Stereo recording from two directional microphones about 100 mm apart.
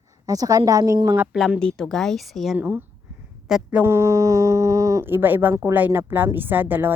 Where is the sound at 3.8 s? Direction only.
30° right (ahead or behind).